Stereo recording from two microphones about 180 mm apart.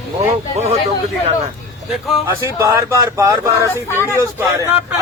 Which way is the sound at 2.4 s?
15° right (ahead or behind).